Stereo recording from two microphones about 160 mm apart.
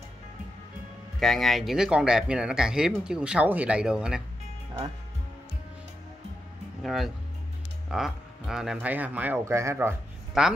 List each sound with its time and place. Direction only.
1.2 s speech: centre (ahead or behind)
6.8 s speech: centre (ahead or behind)
10.4 s speech: 5° right (ahead or behind)